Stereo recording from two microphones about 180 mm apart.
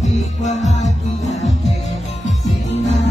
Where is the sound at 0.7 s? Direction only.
40° left (ahead or behind).